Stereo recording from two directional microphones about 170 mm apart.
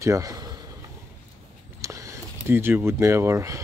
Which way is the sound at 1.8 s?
20° right (ahead or behind).